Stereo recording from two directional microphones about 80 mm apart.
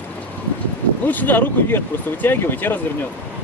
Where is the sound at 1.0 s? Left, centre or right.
Left.